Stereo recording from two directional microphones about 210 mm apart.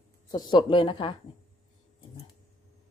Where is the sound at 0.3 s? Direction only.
20° left (ahead or behind).